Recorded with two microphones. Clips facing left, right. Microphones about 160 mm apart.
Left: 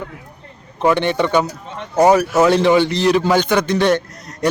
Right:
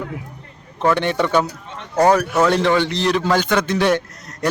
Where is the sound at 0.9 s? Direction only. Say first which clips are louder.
Left 2 dB; centre (ahead or behind).